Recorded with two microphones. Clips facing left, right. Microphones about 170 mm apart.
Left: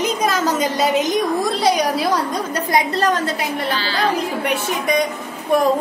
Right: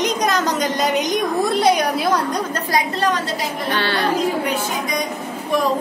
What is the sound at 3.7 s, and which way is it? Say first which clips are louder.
Speech: right 2 dB; 60° right (ahead or behind).